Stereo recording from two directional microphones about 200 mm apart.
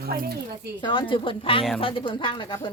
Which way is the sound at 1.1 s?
25° left (ahead or behind).